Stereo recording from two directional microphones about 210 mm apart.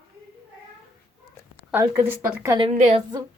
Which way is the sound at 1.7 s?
5° right (ahead or behind).